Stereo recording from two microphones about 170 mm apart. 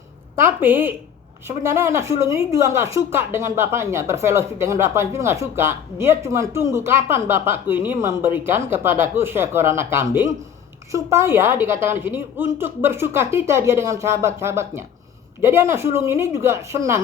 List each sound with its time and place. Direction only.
0.3 s speech: 10° right (ahead or behind)